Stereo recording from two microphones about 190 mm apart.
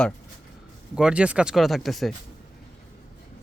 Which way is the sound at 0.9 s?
5° right (ahead or behind).